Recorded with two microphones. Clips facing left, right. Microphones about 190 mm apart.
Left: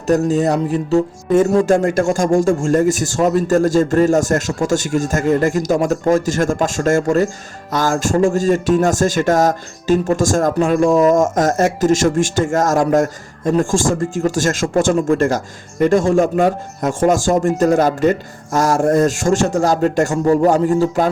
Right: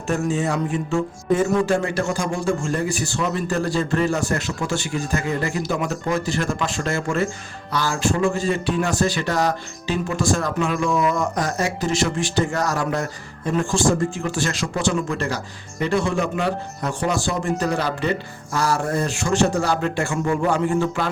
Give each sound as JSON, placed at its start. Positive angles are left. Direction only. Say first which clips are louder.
{"t": 0.1, "sound": "a man's voice", "louder": "left 7 dB", "side_deg": 40}